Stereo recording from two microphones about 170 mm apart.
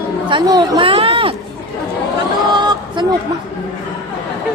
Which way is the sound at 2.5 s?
25° right (ahead or behind).